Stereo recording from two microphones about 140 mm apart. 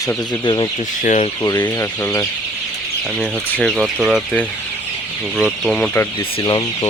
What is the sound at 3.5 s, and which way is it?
Speech, 10° left (ahead or behind).